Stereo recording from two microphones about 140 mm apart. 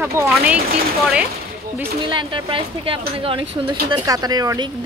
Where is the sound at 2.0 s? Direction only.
35° right (ahead or behind).